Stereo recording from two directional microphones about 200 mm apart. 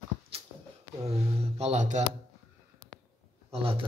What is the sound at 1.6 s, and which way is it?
Speech, 35° right (ahead or behind).